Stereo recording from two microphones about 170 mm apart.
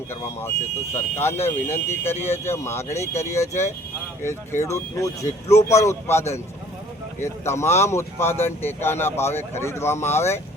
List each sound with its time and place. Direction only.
0.1 s speech: 15° left (ahead or behind)
4.6 s speech: 20° left (ahead or behind)